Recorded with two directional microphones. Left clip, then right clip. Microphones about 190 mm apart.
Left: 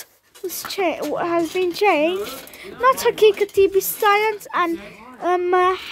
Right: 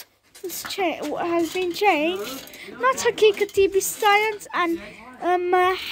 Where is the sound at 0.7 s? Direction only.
15° left (ahead or behind).